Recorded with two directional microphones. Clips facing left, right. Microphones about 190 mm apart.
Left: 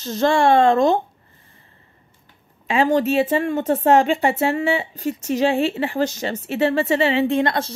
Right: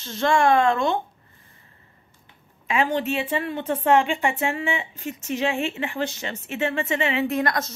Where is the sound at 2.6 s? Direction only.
35° left (ahead or behind).